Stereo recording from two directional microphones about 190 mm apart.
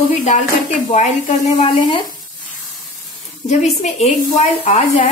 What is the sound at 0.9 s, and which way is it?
Speech, 40° left (ahead or behind).